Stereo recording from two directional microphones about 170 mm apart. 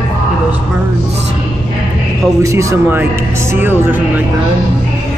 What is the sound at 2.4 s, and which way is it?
Speech, 20° right (ahead or behind).